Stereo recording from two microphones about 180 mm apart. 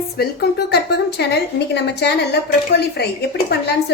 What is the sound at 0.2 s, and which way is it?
A woman's voice, 60° left (ahead or behind).